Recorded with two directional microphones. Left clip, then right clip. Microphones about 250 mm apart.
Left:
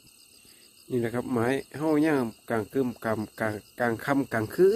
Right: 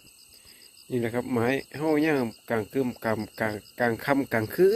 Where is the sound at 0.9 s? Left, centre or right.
Centre.